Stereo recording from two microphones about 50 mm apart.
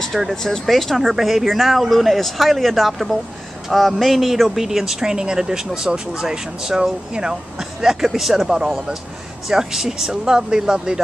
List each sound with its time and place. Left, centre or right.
0.3 s speech: centre